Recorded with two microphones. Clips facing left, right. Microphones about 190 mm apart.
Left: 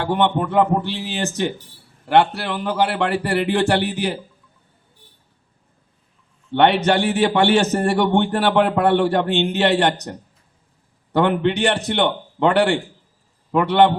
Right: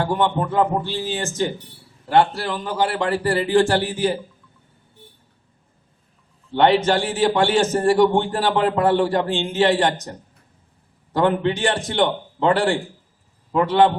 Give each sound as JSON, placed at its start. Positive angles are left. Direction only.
{"t": 0.0, "sound": "a man's voice", "side_deg": 65}
{"t": 6.5, "sound": "a man's voice", "side_deg": 65}